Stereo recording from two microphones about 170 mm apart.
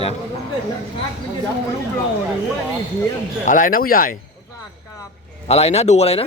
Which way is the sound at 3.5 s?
55° left (ahead or behind).